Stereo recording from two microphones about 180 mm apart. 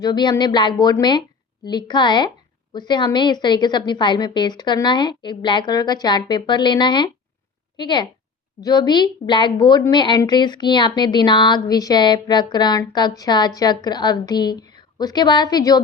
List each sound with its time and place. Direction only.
0.0 s a woman's voice: 25° left (ahead or behind)